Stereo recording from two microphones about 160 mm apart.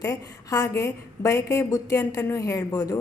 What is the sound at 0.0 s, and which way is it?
A woman's voice, 20° left (ahead or behind).